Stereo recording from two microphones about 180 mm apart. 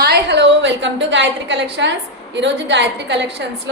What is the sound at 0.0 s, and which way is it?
A woman's voice, 65° right (ahead or behind).